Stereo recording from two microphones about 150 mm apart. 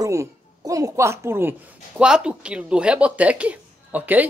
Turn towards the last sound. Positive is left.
turn(degrees=-10)  # may be behind; listen again after turning